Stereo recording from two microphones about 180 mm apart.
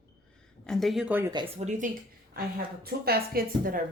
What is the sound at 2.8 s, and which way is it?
Speech, 60° right (ahead or behind).